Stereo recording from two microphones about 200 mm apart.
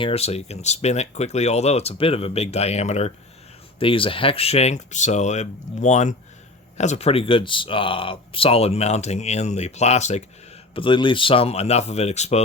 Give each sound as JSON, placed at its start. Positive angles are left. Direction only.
{"t": 0.0, "sound": "speech", "side_deg": 30}
{"t": 10.8, "sound": "speech", "side_deg": 25}